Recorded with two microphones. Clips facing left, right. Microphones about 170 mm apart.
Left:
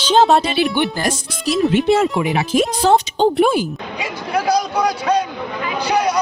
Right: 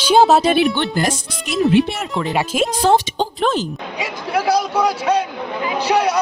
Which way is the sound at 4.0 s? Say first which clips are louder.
Even; 5° right (ahead or behind).